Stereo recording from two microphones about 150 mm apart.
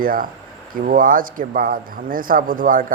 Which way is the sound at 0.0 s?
70° right (ahead or behind).